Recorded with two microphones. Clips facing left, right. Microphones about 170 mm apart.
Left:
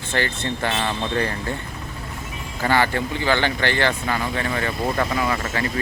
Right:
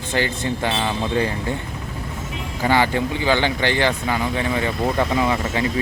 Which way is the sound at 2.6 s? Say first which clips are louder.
Right 2 dB; 15° right (ahead or behind).